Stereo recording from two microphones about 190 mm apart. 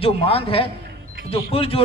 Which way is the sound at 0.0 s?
30° left (ahead or behind).